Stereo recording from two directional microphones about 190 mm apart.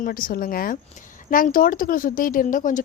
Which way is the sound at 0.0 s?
45° left (ahead or behind).